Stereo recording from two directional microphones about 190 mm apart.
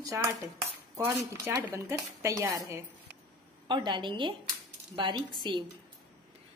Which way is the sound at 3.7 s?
25° right (ahead or behind).